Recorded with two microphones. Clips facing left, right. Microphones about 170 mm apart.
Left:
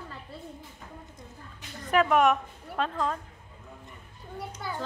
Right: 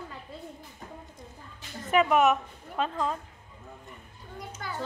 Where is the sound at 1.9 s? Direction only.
5° right (ahead or behind).